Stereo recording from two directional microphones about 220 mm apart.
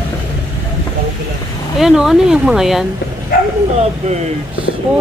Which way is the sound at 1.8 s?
Centre (ahead or behind).